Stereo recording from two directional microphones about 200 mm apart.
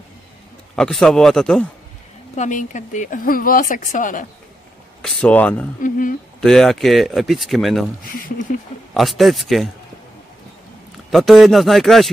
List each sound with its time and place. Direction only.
0.7 s speech: centre (ahead or behind)
2.3 s a woman's voice: 35° left (ahead or behind)
5.0 s speech: 5° left (ahead or behind)
5.8 s a woman's voice: 40° left (ahead or behind)
6.4 s speech: centre (ahead or behind)
8.0 s speech: 45° left (ahead or behind)
8.9 s speech: centre (ahead or behind)
11.1 s speech: centre (ahead or behind)